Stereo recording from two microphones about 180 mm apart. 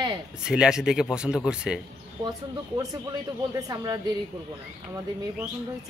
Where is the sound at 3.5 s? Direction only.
20° right (ahead or behind).